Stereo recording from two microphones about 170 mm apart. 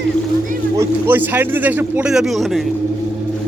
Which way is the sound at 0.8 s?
10° right (ahead or behind).